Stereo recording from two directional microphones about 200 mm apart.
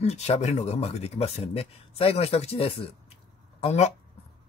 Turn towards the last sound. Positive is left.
turn(degrees=35)  # may be behind; listen again after turning